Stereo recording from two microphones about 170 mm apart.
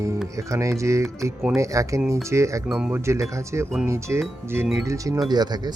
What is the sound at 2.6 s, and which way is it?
Speech, 5° right (ahead or behind).